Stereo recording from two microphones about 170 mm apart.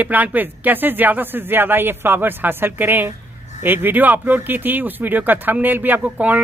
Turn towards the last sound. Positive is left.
turn(degrees=-10)  # may be behind; listen again after turning